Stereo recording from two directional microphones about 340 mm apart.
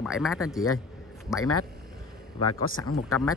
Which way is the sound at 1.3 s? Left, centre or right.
Left.